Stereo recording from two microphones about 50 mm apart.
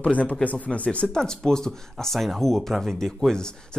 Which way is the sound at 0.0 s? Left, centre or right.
Left.